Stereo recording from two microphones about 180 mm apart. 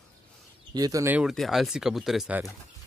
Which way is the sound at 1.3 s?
Centre (ahead or behind).